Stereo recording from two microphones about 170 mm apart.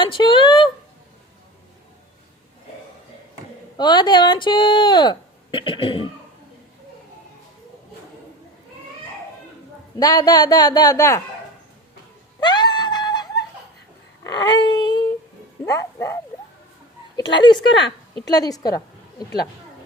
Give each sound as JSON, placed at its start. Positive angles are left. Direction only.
{"t": 0.0, "sound": "speech", "side_deg": 30}
{"t": 3.8, "sound": "speech", "side_deg": 25}
{"t": 10.0, "sound": "speech", "side_deg": 20}
{"t": 12.4, "sound": "a sound", "side_deg": 25}
{"t": 14.3, "sound": "a sound", "side_deg": 25}
{"t": 15.6, "sound": "dog", "side_deg": 20}
{"t": 17.2, "sound": "speech", "side_deg": 25}